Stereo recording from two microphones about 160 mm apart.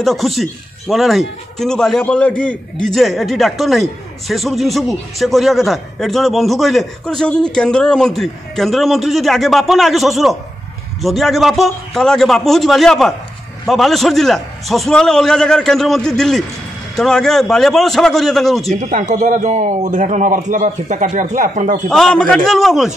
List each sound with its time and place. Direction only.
0.0 s speech: centre (ahead or behind)
18.8 s a man's voice: 50° right (ahead or behind)
21.8 s speech: 5° left (ahead or behind)